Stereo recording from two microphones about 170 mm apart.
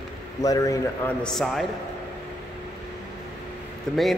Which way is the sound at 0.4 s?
20° left (ahead or behind).